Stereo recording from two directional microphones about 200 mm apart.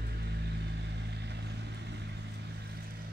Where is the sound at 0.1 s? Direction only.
55° right (ahead or behind).